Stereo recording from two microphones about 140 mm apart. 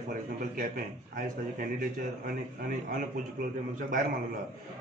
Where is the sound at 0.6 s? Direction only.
85° right.